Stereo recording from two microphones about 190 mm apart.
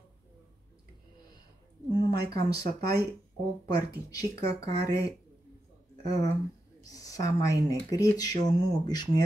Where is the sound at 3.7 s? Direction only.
20° left (ahead or behind).